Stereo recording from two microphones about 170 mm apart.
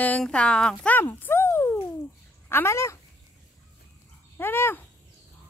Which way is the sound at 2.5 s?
15° left (ahead or behind).